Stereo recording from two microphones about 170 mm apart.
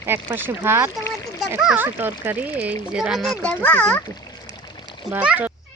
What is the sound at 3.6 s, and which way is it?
Speech, 5° left (ahead or behind).